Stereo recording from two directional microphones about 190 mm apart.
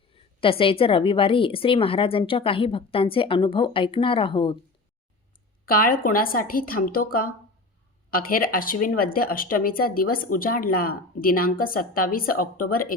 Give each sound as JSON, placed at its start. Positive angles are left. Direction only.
{"t": 0.1, "sound": "a woman's voice", "side_deg": 30}
{"t": 5.6, "sound": "speech", "side_deg": 50}